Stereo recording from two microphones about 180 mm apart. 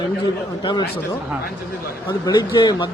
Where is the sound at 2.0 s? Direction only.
20° left (ahead or behind).